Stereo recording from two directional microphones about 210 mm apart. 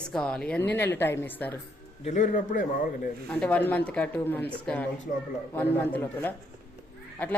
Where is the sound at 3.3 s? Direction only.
5° left (ahead or behind).